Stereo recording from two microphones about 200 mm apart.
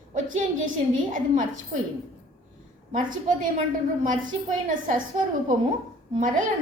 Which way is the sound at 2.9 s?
40° right (ahead or behind).